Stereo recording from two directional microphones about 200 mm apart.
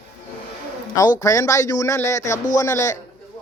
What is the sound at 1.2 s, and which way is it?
Speech, 15° left (ahead or behind).